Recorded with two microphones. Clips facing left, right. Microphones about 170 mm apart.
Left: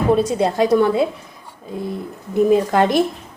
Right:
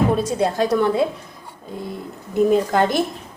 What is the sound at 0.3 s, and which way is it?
Speech, 10° left (ahead or behind).